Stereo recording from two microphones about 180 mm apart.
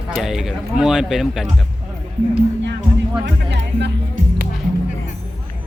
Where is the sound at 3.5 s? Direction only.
70° right (ahead or behind).